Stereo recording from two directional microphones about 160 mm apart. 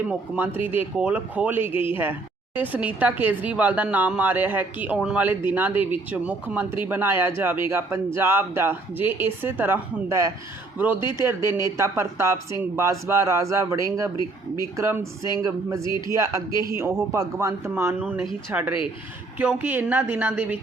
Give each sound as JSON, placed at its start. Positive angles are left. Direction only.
{"t": 0.1, "sound": "a man's voice", "side_deg": -10}